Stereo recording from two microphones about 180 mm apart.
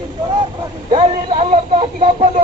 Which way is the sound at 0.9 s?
30° right (ahead or behind).